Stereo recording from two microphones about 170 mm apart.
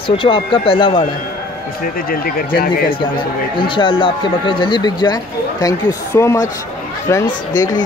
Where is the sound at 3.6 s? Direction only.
30° left (ahead or behind).